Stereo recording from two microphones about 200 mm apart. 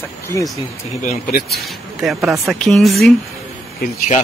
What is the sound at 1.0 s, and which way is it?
Speech, 45° left (ahead or behind).